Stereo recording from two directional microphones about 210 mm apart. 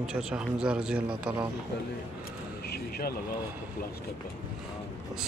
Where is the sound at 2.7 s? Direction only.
45° left (ahead or behind).